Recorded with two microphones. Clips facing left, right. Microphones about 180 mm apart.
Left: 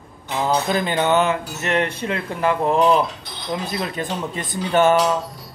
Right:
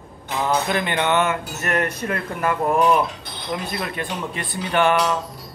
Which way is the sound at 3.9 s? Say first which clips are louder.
Left 2 dB; 45° left (ahead or behind).